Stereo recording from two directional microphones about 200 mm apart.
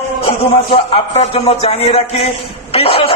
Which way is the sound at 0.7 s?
30° left (ahead or behind).